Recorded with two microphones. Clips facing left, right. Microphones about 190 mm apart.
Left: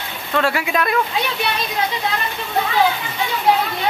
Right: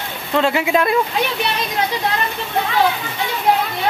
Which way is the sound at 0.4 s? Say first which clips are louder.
Right 3 dB; 20° right (ahead or behind).